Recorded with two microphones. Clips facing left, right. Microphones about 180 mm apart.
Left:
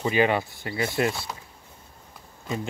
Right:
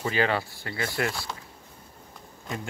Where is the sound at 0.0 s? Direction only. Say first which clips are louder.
Left 4 dB; 20° left (ahead or behind).